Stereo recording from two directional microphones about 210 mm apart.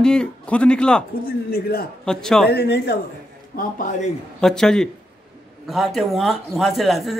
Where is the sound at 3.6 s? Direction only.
40° left (ahead or behind).